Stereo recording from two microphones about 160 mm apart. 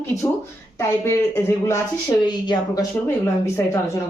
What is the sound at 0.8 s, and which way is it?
Speech, 15° left (ahead or behind).